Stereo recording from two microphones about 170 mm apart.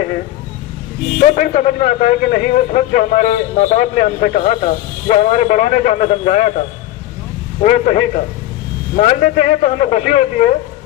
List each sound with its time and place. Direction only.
1.2 s a man's voice: 45° left (ahead or behind)
7.6 s a man's voice: 45° left (ahead or behind)